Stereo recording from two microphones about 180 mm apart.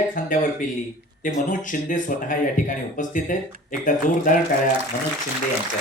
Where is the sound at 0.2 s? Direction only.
50° left (ahead or behind).